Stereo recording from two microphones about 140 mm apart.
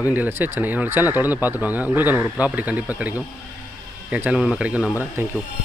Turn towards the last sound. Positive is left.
turn(degrees=-15)  # may be behind; listen again after turning